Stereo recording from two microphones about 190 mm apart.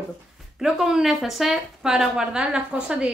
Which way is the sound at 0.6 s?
Centre (ahead or behind).